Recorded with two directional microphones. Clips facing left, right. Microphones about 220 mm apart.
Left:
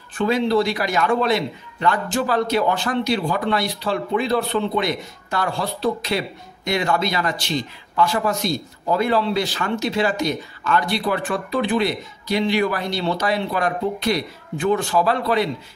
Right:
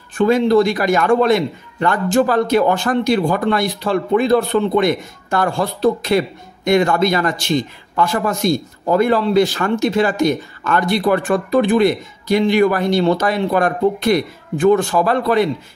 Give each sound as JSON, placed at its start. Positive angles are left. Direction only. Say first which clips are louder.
{"t": 0.3, "sound": "a man's voice", "louder": "right 5 dB", "side_deg": -50}